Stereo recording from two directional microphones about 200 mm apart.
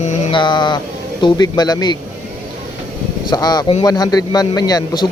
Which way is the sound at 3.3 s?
20° left (ahead or behind).